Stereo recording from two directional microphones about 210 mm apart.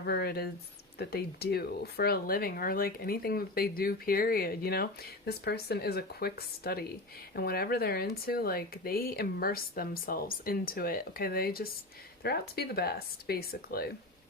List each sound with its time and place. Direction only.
0.0 s speech: 50° left (ahead or behind)